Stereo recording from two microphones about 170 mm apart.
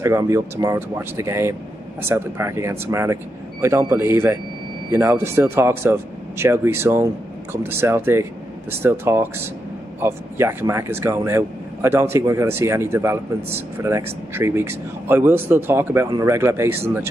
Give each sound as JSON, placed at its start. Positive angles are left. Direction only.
{"t": 0.0, "sound": "speech", "side_deg": -15}